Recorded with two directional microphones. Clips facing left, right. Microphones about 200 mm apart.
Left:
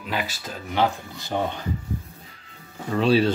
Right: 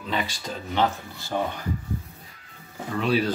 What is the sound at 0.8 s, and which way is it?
Speech, 20° left (ahead or behind).